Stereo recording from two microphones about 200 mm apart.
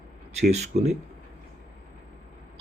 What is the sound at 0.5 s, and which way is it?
Speech, 35° right (ahead or behind).